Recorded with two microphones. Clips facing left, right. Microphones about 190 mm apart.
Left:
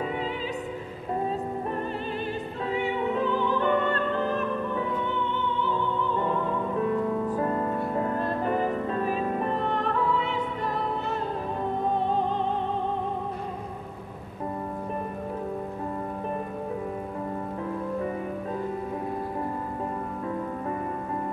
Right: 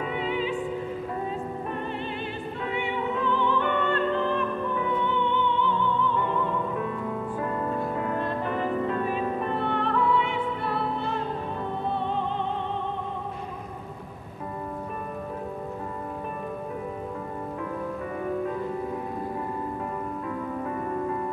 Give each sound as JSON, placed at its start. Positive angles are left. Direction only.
{"t": 2.7, "sound": "music", "side_deg": 40}
{"t": 7.2, "sound": "music", "side_deg": 30}